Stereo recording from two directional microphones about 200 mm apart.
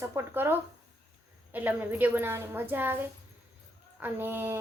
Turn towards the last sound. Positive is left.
turn(degrees=-10)  # may be behind; listen again after turning